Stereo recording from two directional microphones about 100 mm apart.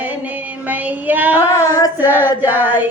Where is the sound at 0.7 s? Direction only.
15° right (ahead or behind).